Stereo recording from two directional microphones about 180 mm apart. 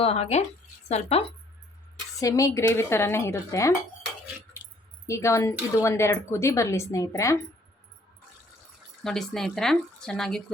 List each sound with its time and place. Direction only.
0.0 s speech: 35° left (ahead or behind)
2.1 s speech: 20° left (ahead or behind)
5.0 s speech: 15° left (ahead or behind)
9.0 s speech: centre (ahead or behind)